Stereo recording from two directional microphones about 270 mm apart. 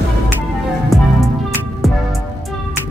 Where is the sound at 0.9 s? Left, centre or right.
Centre.